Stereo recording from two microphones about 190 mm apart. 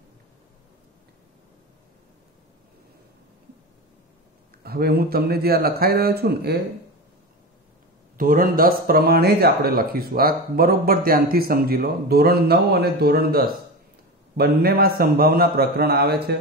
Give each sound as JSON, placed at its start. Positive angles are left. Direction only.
{"t": 4.6, "sound": "speech", "side_deg": -55}
{"t": 8.2, "sound": "speech", "side_deg": -45}